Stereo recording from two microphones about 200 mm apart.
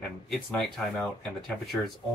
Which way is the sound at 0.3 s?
Centre (ahead or behind).